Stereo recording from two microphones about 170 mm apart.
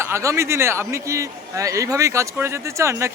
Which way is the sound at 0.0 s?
15° right (ahead or behind).